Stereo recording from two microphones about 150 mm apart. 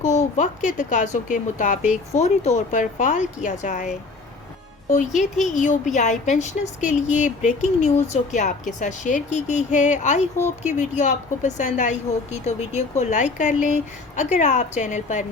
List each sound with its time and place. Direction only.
0.0 s speech: 50° left (ahead or behind)
2.1 s a woman's voice: 50° left (ahead or behind)